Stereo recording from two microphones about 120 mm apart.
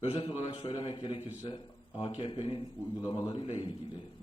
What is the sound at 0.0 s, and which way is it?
Speech, 50° left (ahead or behind).